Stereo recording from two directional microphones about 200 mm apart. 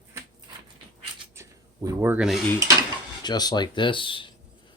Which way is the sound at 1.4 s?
15° right (ahead or behind).